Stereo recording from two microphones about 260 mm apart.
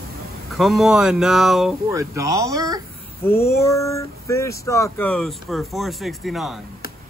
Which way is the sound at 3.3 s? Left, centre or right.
Left.